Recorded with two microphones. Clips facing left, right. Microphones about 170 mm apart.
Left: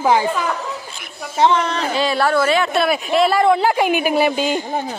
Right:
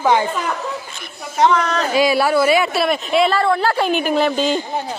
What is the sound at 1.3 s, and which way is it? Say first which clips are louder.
Speech: even; 30° left (ahead or behind).